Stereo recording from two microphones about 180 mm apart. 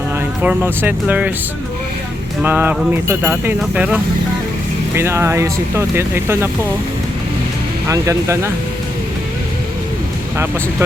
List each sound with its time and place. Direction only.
0.4 s speech: 10° right (ahead or behind)
2.4 s speech: 10° right (ahead or behind)
7.9 s speech: 15° right (ahead or behind)
10.3 s speech: 15° right (ahead or behind)